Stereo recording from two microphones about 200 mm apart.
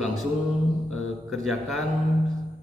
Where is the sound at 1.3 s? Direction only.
Centre (ahead or behind).